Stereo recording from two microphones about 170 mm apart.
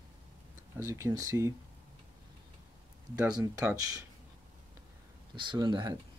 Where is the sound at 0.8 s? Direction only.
15° right (ahead or behind).